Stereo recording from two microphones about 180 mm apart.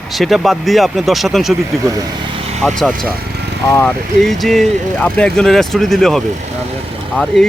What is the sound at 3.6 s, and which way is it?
Speech, 15° left (ahead or behind).